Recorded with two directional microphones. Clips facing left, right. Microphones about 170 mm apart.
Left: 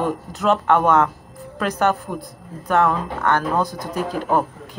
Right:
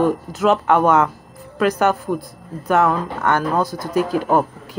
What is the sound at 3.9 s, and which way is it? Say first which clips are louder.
Speech: right 5 dB; 5° right (ahead or behind).